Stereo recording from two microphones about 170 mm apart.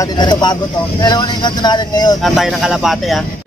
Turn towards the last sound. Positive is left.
turn(degrees=0)  # may be behind; listen again after turning